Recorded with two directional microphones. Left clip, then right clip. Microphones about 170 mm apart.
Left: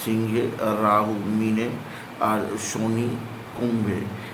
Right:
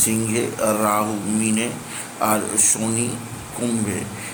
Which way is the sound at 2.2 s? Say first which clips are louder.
Right 3 dB; 10° right (ahead or behind).